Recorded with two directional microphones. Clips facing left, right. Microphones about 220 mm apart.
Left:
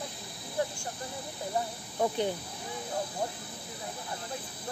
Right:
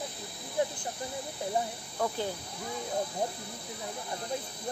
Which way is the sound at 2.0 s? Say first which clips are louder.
Left 3 dB; 20° left (ahead or behind).